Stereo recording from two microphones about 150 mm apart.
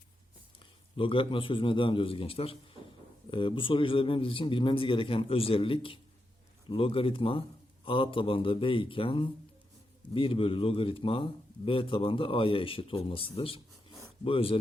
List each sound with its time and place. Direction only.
0.6 s a man's voice: 35° left (ahead or behind)